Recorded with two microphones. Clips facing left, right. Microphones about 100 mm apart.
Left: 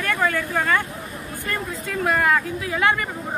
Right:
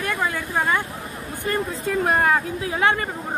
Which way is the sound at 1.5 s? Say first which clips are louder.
Right 5 dB; 30° right (ahead or behind).